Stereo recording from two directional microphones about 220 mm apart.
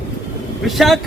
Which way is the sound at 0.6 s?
Centre (ahead or behind).